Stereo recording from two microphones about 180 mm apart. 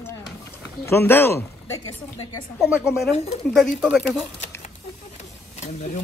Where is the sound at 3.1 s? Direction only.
35° left (ahead or behind).